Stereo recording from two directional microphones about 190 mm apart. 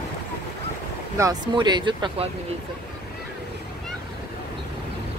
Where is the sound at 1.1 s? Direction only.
20° right (ahead or behind).